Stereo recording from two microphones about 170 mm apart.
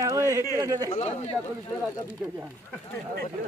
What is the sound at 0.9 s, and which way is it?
Speech, 40° left (ahead or behind).